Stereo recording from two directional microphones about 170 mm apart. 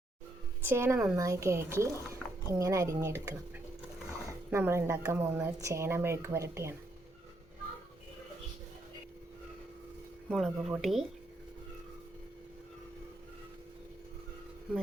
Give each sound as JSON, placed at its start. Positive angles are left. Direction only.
{"t": 0.6, "sound": "speech", "side_deg": -15}
{"t": 10.2, "sound": "speech", "side_deg": 0}